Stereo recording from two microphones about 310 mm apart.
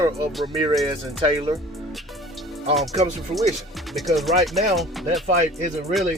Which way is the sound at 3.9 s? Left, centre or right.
Centre.